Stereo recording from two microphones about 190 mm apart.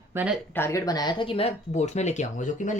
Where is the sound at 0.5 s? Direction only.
15° left (ahead or behind).